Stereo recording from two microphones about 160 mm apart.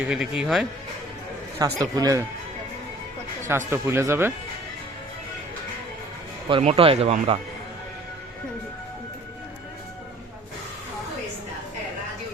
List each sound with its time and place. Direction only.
0.0 s speech: 5° right (ahead or behind)
1.5 s a man's voice: 20° right (ahead or behind)
3.7 s speech: 15° right (ahead or behind)
6.5 s speech: 40° right (ahead or behind)